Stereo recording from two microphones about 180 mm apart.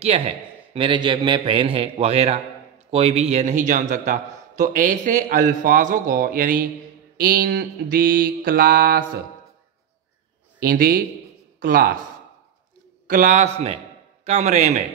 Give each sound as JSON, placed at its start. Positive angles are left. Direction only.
{"t": 0.7, "sound": "a man's voice", "side_deg": -25}
{"t": 7.2, "sound": "mantra", "side_deg": -55}
{"t": 10.6, "sound": "mantra", "side_deg": -55}
{"t": 13.0, "sound": "a man's voice", "side_deg": -45}